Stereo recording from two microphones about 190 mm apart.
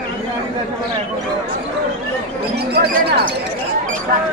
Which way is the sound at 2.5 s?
60° right (ahead or behind).